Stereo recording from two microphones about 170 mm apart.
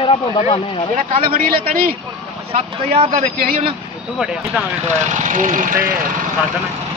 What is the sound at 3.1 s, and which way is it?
Speech, 60° right (ahead or behind).